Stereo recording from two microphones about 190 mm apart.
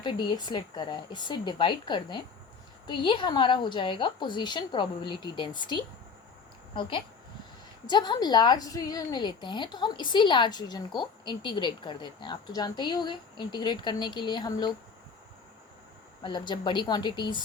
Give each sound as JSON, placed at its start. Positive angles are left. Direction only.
{"t": 0.0, "sound": "a woman's voice", "side_deg": 25}
{"t": 7.9, "sound": "a woman's voice", "side_deg": 20}
{"t": 16.2, "sound": "a woman's voice", "side_deg": 25}